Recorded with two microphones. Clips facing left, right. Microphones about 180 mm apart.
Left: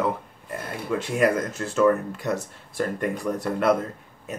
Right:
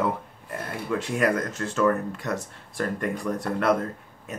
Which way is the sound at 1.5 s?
10° left (ahead or behind).